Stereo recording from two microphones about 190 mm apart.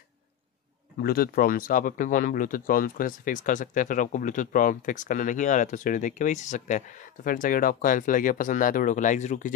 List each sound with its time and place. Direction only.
1.0 s speech: 50° left (ahead or behind)